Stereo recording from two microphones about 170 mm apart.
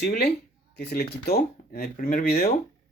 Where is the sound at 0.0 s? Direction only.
75° left (ahead or behind).